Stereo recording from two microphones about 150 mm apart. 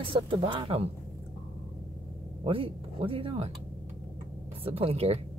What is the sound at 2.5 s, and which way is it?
Speech, 35° right (ahead or behind).